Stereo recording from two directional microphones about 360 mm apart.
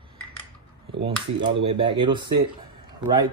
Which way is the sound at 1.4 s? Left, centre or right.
Centre.